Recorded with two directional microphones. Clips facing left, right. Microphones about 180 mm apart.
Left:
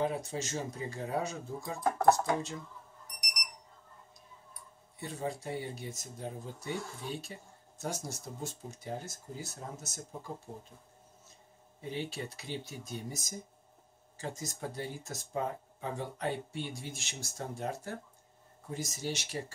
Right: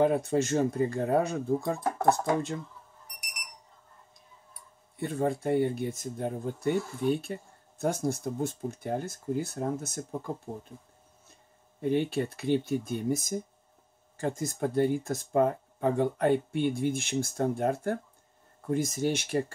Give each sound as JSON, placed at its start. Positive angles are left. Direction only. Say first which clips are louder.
{"t": 0.0, "sound": "speech", "louder": "right 9 dB", "side_deg": -55}
{"t": 4.9, "sound": "speech", "louder": "right 9 dB", "side_deg": -55}
{"t": 11.8, "sound": "speech", "louder": "right 11 dB", "side_deg": -55}